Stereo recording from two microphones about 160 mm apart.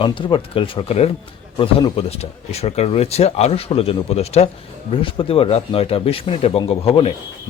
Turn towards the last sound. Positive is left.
turn(degrees=35)  # may be behind; listen again after turning